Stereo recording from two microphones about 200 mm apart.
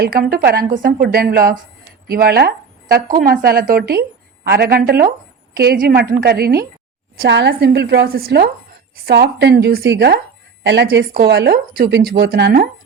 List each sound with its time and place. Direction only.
0.0 s a woman's voice: 50° right (ahead or behind)